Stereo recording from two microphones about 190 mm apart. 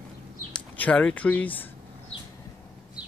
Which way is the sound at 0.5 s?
5° left (ahead or behind).